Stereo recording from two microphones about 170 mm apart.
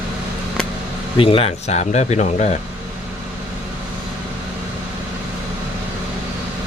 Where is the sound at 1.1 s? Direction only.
30° left (ahead or behind).